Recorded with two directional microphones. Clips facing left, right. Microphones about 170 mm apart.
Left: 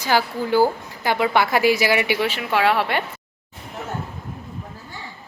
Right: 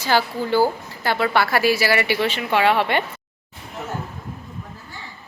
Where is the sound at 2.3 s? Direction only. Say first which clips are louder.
Right 3 dB; centre (ahead or behind).